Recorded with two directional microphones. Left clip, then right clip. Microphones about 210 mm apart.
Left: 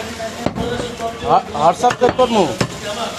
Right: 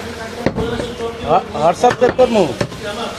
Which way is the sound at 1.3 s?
Centre (ahead or behind).